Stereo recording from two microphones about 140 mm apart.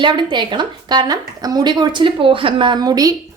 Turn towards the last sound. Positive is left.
turn(degrees=-25)  # may be behind; listen again after turning